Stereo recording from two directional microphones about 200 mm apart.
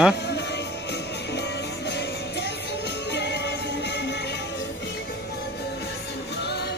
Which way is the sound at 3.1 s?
60° left (ahead or behind).